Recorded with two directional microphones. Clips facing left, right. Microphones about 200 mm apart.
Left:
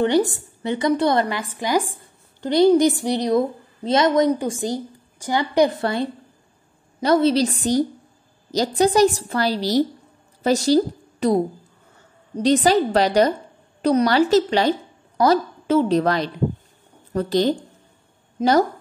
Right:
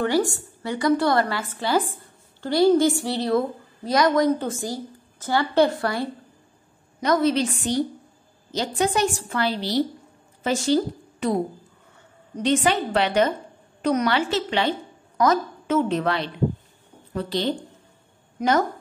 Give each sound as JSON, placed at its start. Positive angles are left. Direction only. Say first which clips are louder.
{"t": 0.0, "sound": "a woman's voice", "louder": "left 4 dB", "side_deg": 20}
{"t": 12.4, "sound": "a woman's voice", "louder": "left 5 dB", "side_deg": 35}